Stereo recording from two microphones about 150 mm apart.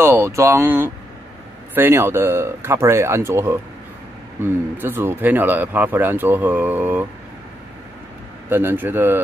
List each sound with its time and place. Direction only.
0.0 s speech: 15° right (ahead or behind)
8.5 s speech: 15° right (ahead or behind)